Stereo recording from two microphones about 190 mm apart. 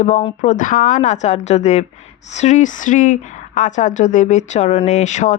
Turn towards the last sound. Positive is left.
turn(degrees=40)  # may be behind; listen again after turning